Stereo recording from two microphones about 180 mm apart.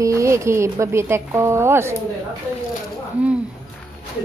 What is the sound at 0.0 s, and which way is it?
A woman's voice, 15° right (ahead or behind).